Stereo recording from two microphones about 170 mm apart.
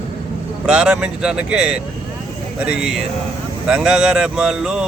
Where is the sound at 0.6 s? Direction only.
5° right (ahead or behind).